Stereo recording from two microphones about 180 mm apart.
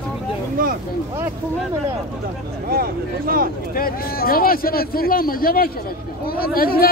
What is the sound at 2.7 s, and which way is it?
Speech, 55° right (ahead or behind).